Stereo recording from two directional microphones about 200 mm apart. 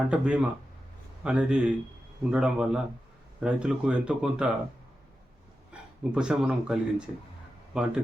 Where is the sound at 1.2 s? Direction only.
5° right (ahead or behind).